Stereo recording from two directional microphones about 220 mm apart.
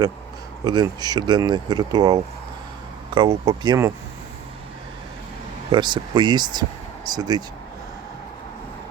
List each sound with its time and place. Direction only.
0.6 s speech: 20° right (ahead or behind)
5.7 s speech: 20° right (ahead or behind)